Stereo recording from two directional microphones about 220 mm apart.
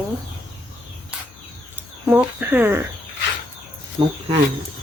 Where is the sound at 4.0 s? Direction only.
20° right (ahead or behind).